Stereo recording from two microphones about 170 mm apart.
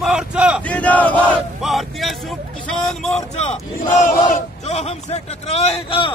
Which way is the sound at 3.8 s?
50° left (ahead or behind).